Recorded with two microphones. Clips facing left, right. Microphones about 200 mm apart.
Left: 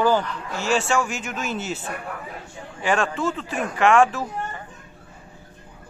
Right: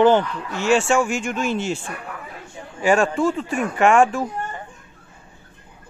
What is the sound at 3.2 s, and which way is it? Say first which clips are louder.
Speech: right 5 dB; centre (ahead or behind).